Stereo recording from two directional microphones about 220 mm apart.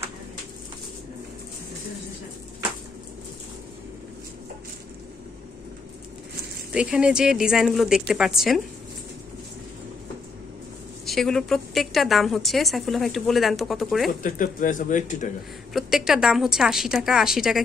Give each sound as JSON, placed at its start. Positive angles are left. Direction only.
{"t": 6.7, "sound": "a woman's voice", "side_deg": -5}
{"t": 11.1, "sound": "a woman's voice", "side_deg": 0}
{"t": 14.2, "sound": "speech", "side_deg": 40}
{"t": 15.7, "sound": "a woman's voice", "side_deg": -5}